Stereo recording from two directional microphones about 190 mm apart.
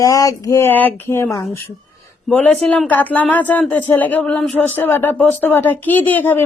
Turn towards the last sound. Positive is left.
turn(degrees=10)  # may be behind; listen again after turning